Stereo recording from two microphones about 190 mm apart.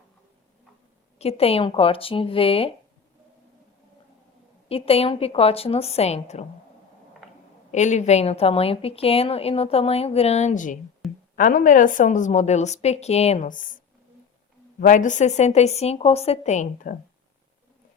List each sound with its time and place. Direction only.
1.2 s speech: 30° left (ahead or behind)
4.7 s a woman's voice: 30° left (ahead or behind)
7.2 s a sound: centre (ahead or behind)
7.7 s a woman's voice: 40° left (ahead or behind)
11.0 s a sound: centre (ahead or behind)
11.3 s a woman's voice: 45° left (ahead or behind)
14.8 s a woman's voice: 40° left (ahead or behind)